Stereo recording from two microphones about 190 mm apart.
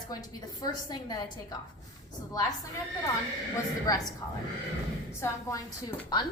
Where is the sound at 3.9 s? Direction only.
20° left (ahead or behind).